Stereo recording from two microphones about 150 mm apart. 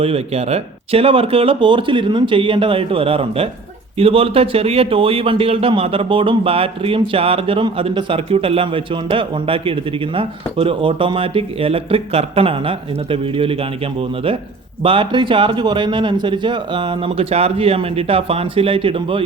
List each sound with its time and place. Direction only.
0.0 s speech: 40° right (ahead or behind)
14.8 s speech: 35° right (ahead or behind)